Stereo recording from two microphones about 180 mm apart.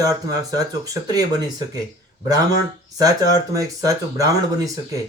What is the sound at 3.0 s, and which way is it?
Speech, 20° right (ahead or behind).